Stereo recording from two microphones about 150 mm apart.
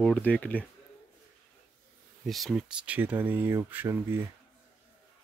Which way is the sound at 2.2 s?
Centre (ahead or behind).